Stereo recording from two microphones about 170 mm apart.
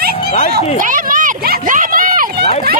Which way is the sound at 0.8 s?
50° right (ahead or behind).